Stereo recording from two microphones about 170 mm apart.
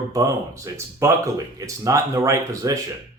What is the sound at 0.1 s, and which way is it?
Speech, 20° right (ahead or behind).